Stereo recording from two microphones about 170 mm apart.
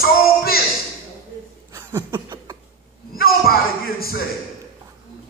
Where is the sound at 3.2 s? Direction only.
60° left (ahead or behind).